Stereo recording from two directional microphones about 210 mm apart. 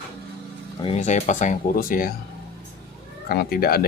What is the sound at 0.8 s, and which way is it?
Speech, 30° left (ahead or behind).